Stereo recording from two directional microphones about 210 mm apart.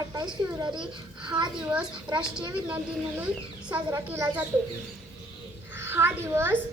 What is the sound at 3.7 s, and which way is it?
Speech, 15° right (ahead or behind).